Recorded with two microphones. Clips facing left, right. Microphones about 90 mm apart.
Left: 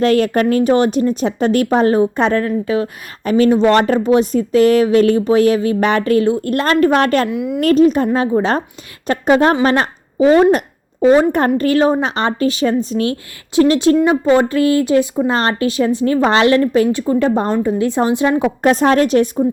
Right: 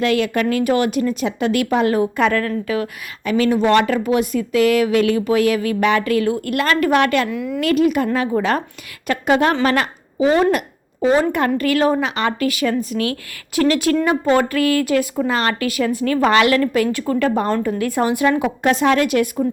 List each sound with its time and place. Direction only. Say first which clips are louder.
0.0 s speech: left 4 dB; 40° left (ahead or behind)
7.3 s a woman's voice: left 4 dB; 20° left (ahead or behind)
7.6 s a woman's voice: left 5 dB; 35° left (ahead or behind)